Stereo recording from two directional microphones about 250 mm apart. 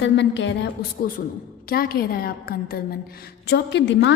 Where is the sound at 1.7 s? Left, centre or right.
Left.